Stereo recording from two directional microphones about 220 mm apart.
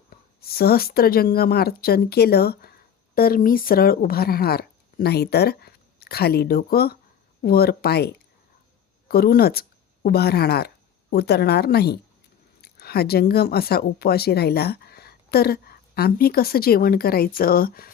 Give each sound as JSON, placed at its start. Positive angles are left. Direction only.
{"t": 0.5, "sound": "a woman's voice", "side_deg": 45}